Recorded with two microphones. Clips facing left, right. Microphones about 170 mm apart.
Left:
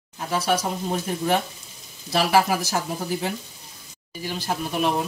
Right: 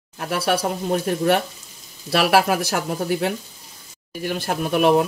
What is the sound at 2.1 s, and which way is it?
Speech, 70° right (ahead or behind).